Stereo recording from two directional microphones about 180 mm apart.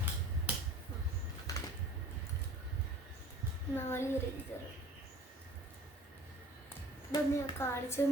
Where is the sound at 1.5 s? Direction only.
20° left (ahead or behind).